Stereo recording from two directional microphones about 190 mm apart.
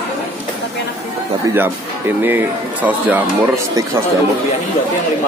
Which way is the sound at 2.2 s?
10° right (ahead or behind).